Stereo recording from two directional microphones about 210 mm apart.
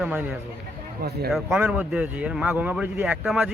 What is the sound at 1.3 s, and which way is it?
Speech, centre (ahead or behind).